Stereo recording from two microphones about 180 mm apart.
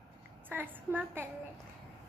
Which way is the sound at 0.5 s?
10° right (ahead or behind).